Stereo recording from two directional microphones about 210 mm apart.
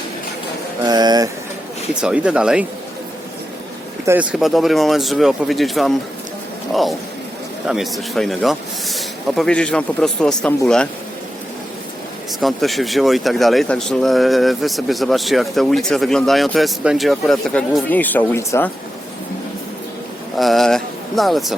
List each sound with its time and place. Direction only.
0.9 s a sound: 20° right (ahead or behind)
1.9 s speech: 5° right (ahead or behind)
4.0 s speech: 10° right (ahead or behind)
7.7 s speech: centre (ahead or behind)
12.4 s speech: centre (ahead or behind)
20.4 s speech: centre (ahead or behind)